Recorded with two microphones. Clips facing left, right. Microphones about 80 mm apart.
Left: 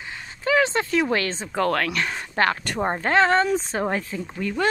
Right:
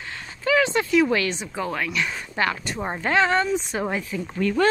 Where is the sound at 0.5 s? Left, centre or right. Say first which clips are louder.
Even; left.